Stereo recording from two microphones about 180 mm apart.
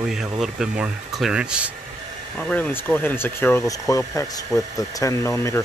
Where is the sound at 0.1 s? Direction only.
Centre (ahead or behind).